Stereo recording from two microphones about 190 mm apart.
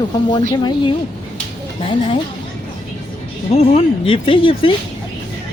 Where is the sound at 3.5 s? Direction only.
30° left (ahead or behind).